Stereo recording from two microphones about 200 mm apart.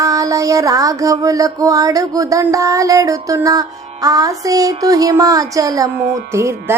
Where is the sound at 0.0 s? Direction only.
15° right (ahead or behind).